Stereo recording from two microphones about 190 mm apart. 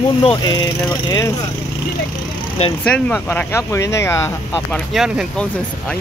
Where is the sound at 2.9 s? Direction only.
5° left (ahead or behind).